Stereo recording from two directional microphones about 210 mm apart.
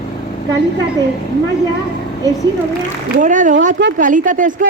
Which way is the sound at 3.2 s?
35° right (ahead or behind).